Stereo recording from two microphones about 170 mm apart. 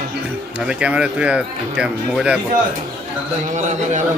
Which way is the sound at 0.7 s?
5° right (ahead or behind).